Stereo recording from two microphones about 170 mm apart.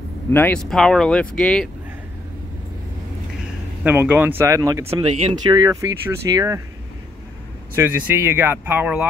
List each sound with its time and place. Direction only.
0.3 s speech: 10° left (ahead or behind)
3.8 s speech: 10° right (ahead or behind)
7.7 s speech: 10° right (ahead or behind)